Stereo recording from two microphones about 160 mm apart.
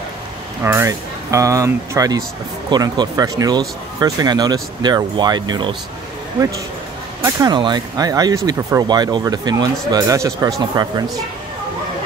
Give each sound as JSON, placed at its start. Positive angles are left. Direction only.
{"t": 0.7, "sound": "speech", "side_deg": -20}
{"t": 7.2, "sound": "speech", "side_deg": -25}